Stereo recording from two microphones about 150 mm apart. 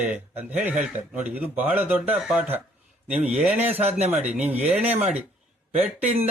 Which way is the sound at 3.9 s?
45° right (ahead or behind).